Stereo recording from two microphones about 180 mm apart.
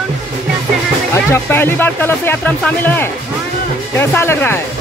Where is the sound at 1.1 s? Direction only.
15° left (ahead or behind).